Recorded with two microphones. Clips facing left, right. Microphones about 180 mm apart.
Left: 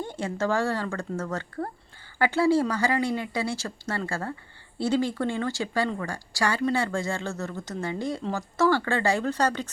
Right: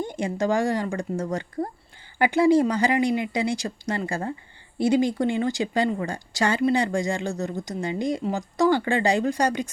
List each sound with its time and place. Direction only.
0.0 s speech: 15° right (ahead or behind)